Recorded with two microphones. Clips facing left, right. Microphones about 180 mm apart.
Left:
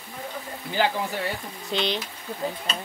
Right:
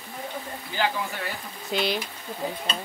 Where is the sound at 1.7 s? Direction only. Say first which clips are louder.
Even; 5° right (ahead or behind).